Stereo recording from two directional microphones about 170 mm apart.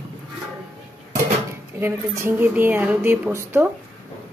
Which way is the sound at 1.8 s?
15° right (ahead or behind).